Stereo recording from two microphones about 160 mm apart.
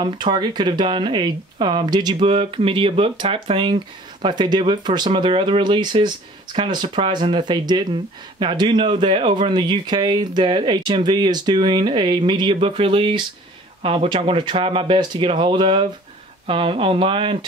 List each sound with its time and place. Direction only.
0.0 s speech: 25° right (ahead or behind)